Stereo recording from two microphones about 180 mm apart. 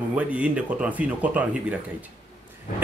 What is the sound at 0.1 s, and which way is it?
Speech, 10° right (ahead or behind).